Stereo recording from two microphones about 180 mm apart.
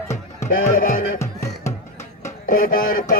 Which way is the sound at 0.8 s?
50° left (ahead or behind).